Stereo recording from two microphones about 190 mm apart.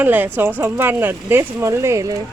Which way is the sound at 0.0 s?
10° right (ahead or behind).